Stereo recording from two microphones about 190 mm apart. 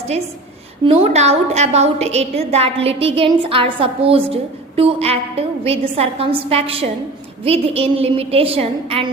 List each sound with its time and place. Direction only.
0.9 s a woman's voice: 35° right (ahead or behind)